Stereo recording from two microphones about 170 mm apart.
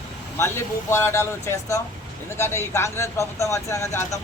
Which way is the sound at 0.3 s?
15° left (ahead or behind).